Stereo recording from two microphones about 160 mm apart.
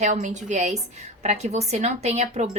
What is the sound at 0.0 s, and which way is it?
A woman's voice, 50° right (ahead or behind).